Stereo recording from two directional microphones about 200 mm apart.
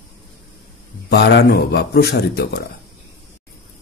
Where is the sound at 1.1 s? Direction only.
55° left (ahead or behind).